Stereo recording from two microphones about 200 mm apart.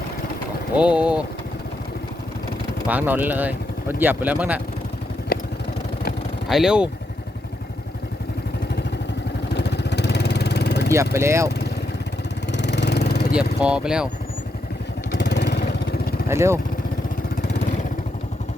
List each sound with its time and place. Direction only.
0.8 s speech: 5° right (ahead or behind)
2.8 s speech: 10° right (ahead or behind)
5.3 s vehicle: 45° left (ahead or behind)
6.5 s speech: centre (ahead or behind)
9.5 s vehicle: 60° left (ahead or behind)
10.8 s speech: 15° right (ahead or behind)
12.5 s vehicle: 60° left (ahead or behind)
13.3 s speech: 5° right (ahead or behind)
15.1 s vehicle: 60° left (ahead or behind)
16.3 s speech: 15° right (ahead or behind)